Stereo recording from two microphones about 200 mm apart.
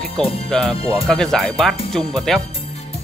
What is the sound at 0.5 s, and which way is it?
Speech, 5° left (ahead or behind).